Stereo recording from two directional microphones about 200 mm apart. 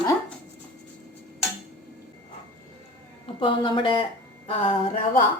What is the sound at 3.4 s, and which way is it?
Speech, 25° left (ahead or behind).